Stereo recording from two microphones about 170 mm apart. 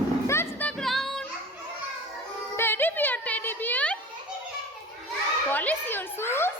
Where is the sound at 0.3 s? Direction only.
10° left (ahead or behind).